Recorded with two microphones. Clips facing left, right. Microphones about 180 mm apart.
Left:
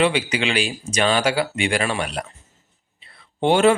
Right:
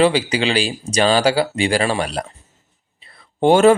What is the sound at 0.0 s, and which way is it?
Speech, 35° right (ahead or behind).